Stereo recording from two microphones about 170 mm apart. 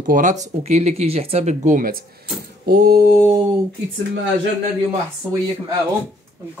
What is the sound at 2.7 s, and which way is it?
Mantra, 60° right (ahead or behind).